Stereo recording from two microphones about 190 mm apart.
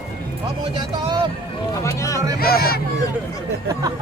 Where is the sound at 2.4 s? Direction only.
50° left (ahead or behind).